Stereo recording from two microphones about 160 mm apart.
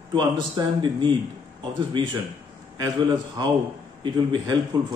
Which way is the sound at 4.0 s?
30° right (ahead or behind).